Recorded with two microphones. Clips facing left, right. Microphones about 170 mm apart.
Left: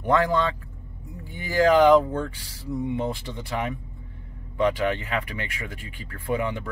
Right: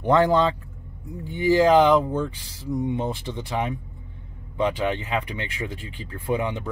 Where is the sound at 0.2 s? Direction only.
25° right (ahead or behind).